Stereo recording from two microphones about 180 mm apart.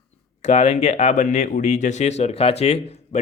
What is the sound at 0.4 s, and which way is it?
Speech, 35° left (ahead or behind).